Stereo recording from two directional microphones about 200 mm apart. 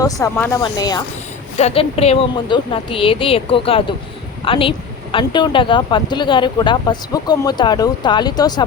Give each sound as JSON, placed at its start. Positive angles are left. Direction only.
{"t": 0.0, "sound": "speech", "side_deg": 15}
{"t": 1.5, "sound": "speech", "side_deg": 30}